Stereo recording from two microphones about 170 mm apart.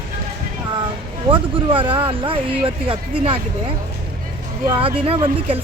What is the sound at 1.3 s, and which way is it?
Speech, 30° right (ahead or behind).